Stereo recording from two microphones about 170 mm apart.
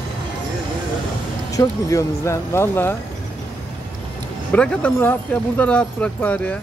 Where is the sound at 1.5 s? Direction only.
20° left (ahead or behind).